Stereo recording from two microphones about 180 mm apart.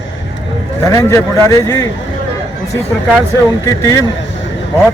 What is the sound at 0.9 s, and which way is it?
Speech, 15° left (ahead or behind).